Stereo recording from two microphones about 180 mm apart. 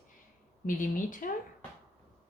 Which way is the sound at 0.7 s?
50° left (ahead or behind).